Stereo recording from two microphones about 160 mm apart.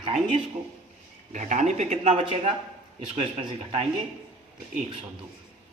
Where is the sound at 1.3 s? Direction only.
50° right (ahead or behind).